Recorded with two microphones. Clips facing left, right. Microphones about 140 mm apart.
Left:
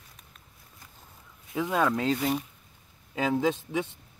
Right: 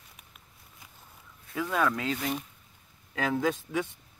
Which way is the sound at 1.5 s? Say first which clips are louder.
Left 2 dB; 20° left (ahead or behind).